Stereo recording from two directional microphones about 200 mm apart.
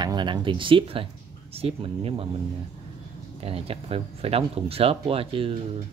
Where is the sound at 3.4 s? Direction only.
30° right (ahead or behind).